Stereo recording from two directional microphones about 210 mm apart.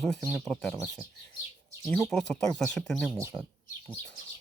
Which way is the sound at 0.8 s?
5° right (ahead or behind).